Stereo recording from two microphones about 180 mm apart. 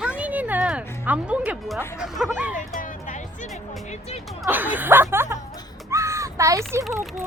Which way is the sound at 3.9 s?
35° left (ahead or behind).